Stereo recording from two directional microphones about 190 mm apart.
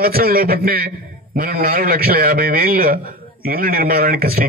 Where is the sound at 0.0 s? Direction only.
50° right (ahead or behind).